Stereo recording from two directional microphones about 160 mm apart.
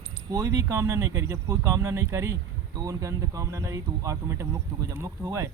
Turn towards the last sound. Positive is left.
turn(degrees=-20)  # may be behind; listen again after turning